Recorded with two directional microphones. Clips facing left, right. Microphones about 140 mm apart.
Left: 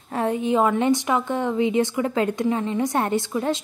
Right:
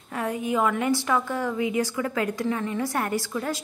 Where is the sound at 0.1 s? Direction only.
25° left (ahead or behind).